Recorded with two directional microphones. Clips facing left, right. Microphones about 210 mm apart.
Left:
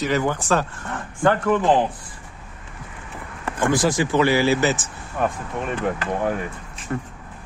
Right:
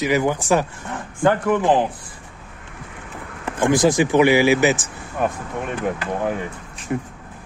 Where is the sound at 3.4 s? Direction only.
20° right (ahead or behind).